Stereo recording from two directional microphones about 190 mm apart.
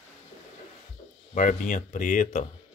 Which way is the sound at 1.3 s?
40° left (ahead or behind).